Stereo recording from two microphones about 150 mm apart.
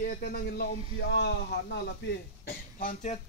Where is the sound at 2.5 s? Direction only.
65° left (ahead or behind).